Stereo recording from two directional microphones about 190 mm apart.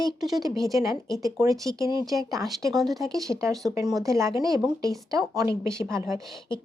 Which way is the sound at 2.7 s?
Centre (ahead or behind).